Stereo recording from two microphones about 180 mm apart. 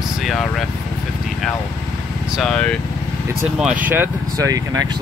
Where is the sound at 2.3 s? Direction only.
5° left (ahead or behind).